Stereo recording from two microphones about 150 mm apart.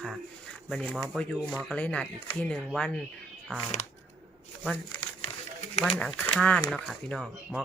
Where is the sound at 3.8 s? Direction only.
55° left (ahead or behind).